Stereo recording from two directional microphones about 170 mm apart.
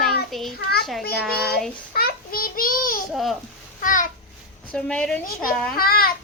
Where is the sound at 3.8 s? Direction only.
50° left (ahead or behind).